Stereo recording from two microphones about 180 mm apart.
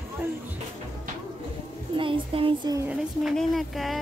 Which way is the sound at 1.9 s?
30° right (ahead or behind).